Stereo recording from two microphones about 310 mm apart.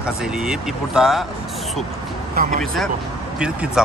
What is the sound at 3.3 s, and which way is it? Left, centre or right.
Speech, centre.